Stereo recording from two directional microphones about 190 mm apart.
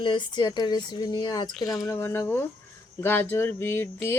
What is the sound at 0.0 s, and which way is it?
Speech, 25° left (ahead or behind).